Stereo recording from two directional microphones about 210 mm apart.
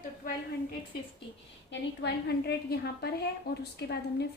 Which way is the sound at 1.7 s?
50° left (ahead or behind).